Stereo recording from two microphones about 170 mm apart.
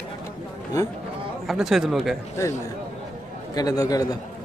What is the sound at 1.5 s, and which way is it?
Speech, centre (ahead or behind).